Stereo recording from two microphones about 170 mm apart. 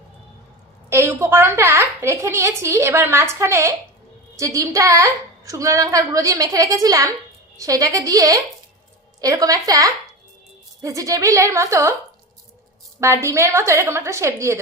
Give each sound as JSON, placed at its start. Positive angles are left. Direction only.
{"t": 0.8, "sound": "a woman's voice", "side_deg": -15}
{"t": 13.0, "sound": "a woman's voice", "side_deg": -15}